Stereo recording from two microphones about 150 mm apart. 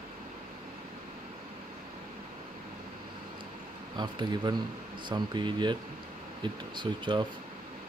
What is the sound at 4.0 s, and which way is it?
Speech, 30° right (ahead or behind).